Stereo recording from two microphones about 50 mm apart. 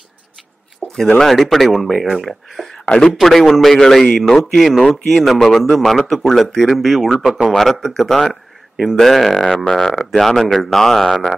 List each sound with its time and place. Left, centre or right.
0.8 s a sound: centre
1.2 s speech: centre
7.2 s speech: centre
7.5 s speech: centre